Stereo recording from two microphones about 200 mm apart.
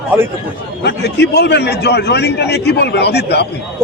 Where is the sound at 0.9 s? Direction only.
55° left (ahead or behind).